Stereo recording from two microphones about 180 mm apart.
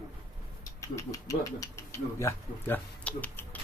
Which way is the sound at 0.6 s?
20° left (ahead or behind).